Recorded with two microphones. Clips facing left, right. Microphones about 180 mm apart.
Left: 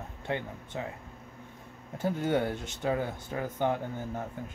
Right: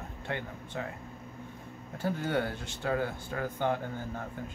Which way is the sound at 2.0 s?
20° left (ahead or behind).